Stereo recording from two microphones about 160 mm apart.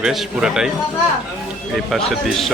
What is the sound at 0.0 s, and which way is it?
Speech, 5° right (ahead or behind).